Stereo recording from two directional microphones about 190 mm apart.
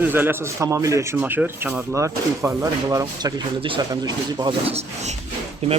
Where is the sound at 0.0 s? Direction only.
10° right (ahead or behind).